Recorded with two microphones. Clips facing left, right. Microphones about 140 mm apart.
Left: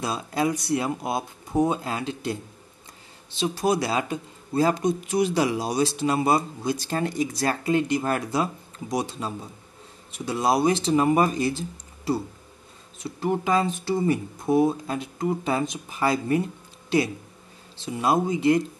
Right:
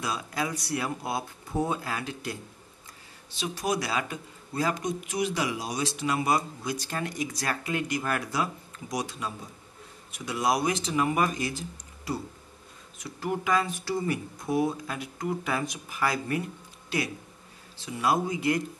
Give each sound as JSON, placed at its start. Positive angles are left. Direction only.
{"t": 0.0, "sound": "speech", "side_deg": 30}